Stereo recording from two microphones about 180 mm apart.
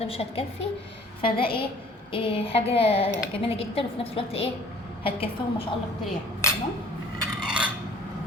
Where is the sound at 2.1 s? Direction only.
30° left (ahead or behind).